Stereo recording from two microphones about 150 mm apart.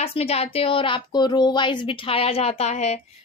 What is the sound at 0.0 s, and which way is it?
A woman's voice, 40° left (ahead or behind).